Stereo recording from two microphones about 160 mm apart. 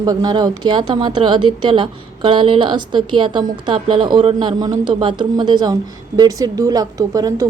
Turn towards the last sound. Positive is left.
turn(degrees=-20)  # may be behind; listen again after turning